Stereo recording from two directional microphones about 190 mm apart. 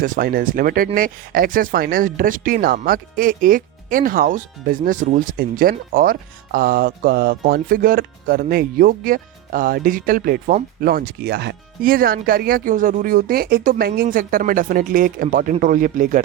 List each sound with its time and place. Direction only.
0.0 s speech: 45° right (ahead or behind)